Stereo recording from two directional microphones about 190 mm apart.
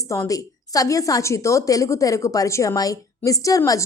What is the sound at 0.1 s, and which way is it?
A woman's voice, 15° left (ahead or behind).